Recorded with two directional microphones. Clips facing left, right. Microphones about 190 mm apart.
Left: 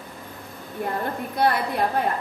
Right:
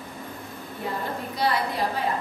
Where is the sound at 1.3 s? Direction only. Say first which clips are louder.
Left 4 dB; 55° left (ahead or behind).